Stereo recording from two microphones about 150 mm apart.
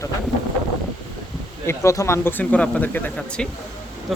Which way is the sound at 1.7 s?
20° left (ahead or behind).